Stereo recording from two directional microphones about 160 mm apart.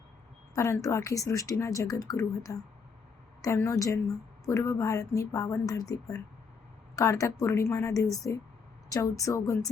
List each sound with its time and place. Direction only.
0.5 s a woman's voice: 20° left (ahead or behind)